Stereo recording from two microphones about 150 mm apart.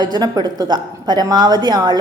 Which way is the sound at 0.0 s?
25° right (ahead or behind).